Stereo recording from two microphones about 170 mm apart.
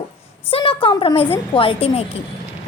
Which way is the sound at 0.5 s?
30° left (ahead or behind).